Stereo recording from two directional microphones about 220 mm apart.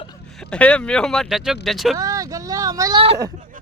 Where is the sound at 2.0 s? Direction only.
15° right (ahead or behind).